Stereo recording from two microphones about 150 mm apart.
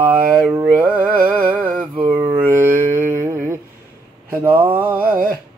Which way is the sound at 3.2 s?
15° right (ahead or behind).